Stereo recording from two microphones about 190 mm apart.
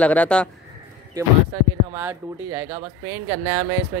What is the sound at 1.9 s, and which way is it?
Speech, 10° right (ahead or behind).